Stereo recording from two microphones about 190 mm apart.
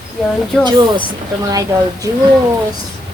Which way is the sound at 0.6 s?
25° right (ahead or behind).